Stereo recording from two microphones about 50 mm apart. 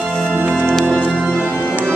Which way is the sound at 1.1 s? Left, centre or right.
Centre.